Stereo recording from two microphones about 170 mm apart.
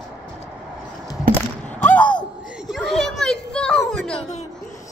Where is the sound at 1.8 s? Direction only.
10° left (ahead or behind).